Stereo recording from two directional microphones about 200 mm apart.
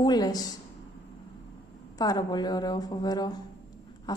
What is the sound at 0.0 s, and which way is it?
Speech, 20° left (ahead or behind).